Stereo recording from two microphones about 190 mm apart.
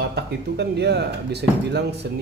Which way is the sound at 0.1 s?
60° right (ahead or behind).